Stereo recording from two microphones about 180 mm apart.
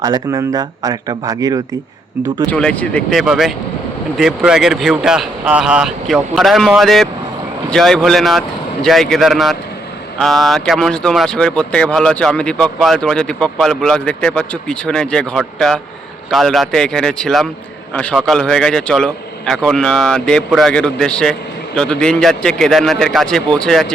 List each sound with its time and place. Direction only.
0.0 s speech: 20° right (ahead or behind)
2.5 s speech: 5° left (ahead or behind)